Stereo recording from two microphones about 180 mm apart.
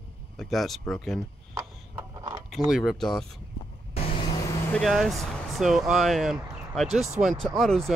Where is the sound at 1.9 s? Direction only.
25° right (ahead or behind).